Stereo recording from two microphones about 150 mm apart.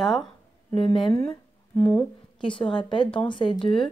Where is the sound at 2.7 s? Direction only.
30° left (ahead or behind).